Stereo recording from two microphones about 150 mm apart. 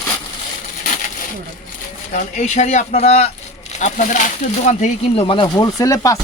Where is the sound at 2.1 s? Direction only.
50° left (ahead or behind).